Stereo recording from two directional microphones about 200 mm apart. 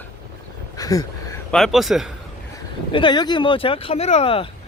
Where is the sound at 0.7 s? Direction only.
15° left (ahead or behind).